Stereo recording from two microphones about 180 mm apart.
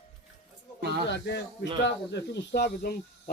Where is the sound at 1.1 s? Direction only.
75° left (ahead or behind).